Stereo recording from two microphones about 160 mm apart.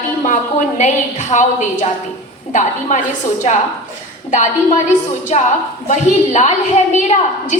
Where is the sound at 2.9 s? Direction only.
50° left (ahead or behind).